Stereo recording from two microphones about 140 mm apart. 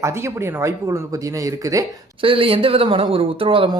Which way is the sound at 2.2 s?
40° right (ahead or behind).